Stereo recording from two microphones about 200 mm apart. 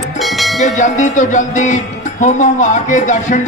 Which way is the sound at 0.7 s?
35° left (ahead or behind).